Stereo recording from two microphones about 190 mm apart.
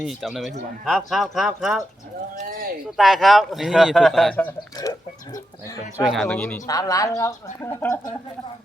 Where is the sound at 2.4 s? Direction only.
50° right (ahead or behind).